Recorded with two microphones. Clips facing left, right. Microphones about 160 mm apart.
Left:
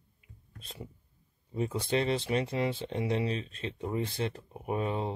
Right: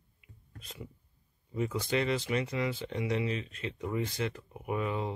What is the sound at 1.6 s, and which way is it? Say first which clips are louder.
Speech: left 1 dB; 30° left (ahead or behind).